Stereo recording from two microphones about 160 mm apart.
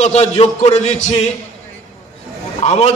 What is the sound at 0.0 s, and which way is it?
A man's voice, 45° left (ahead or behind).